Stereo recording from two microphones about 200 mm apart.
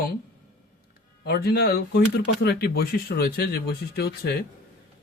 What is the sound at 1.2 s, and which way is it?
Speech, 55° left (ahead or behind).